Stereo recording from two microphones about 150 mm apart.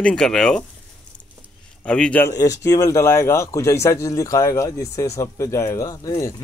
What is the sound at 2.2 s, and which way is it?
Speech, 20° left (ahead or behind).